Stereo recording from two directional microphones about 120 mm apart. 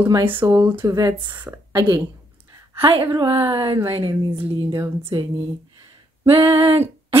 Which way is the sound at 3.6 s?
25° right (ahead or behind).